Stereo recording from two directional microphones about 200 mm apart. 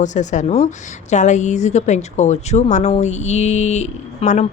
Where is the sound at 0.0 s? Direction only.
35° left (ahead or behind).